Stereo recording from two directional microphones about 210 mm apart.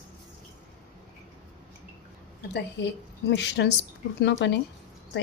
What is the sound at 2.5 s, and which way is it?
A woman's voice, 55° left (ahead or behind).